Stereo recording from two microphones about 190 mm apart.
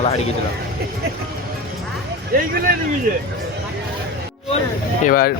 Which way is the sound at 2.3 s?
50° right (ahead or behind).